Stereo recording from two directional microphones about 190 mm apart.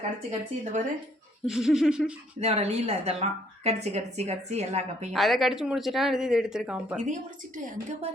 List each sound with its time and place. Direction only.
0.3 s speech: 40° right (ahead or behind)
1.5 s speech: 5° right (ahead or behind)
2.4 s speech: 35° right (ahead or behind)
5.1 s speech: centre (ahead or behind)
6.9 s speech: 40° right (ahead or behind)